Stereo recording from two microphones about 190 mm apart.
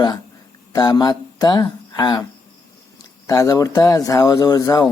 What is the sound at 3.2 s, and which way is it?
Speech, 20° left (ahead or behind).